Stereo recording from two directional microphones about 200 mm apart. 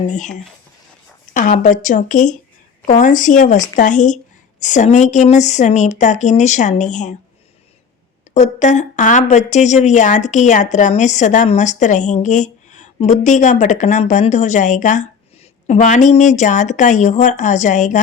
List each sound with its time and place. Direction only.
0.1 s speech: 40° left (ahead or behind)
8.3 s speech: 35° left (ahead or behind)